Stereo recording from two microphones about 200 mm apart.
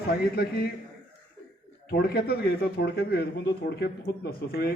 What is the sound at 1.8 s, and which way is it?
A man's voice, 50° left (ahead or behind).